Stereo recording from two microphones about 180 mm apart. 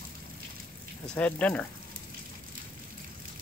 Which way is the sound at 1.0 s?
10° left (ahead or behind).